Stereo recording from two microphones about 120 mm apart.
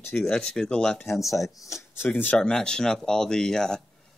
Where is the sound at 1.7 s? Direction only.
25° left (ahead or behind).